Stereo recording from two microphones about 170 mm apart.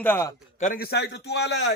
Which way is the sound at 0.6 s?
60° left (ahead or behind).